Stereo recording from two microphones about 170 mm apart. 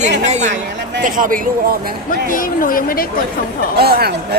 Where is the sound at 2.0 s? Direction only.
55° left (ahead or behind).